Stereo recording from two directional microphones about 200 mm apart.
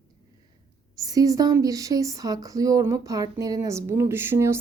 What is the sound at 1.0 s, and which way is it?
Speech, 15° right (ahead or behind).